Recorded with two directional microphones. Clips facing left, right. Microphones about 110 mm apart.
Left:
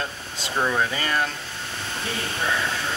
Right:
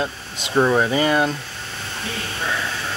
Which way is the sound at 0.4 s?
20° right (ahead or behind).